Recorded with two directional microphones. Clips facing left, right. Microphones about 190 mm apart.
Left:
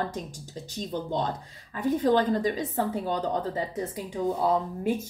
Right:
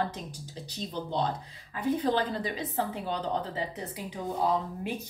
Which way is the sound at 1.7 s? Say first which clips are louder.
Left 4 dB; 45° left (ahead or behind).